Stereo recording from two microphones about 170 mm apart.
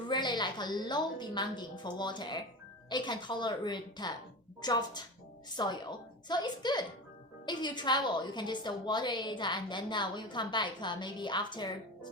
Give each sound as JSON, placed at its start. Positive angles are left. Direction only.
{"t": 0.1, "sound": "a woman's voice", "side_deg": 25}